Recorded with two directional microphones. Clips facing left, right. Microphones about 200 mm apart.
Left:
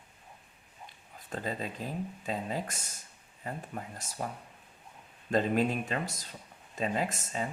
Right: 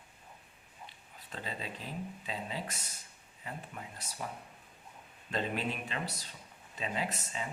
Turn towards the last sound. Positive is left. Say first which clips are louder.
# left 4 dB
turn(degrees=45)  # may be behind; listen again after turning